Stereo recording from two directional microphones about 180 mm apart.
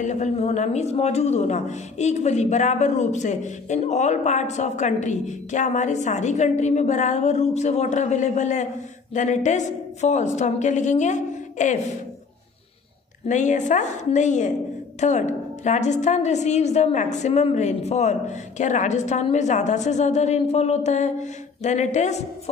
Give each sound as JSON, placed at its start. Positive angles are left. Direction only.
{"t": 0.0, "sound": "speech", "side_deg": 40}
{"t": 13.3, "sound": "a woman's voice", "side_deg": 45}